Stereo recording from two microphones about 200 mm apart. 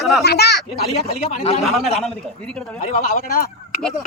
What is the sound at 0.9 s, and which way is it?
Speech, 30° left (ahead or behind).